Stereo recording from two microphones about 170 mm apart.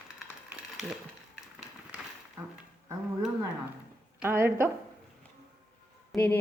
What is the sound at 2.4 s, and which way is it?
Music, 20° right (ahead or behind).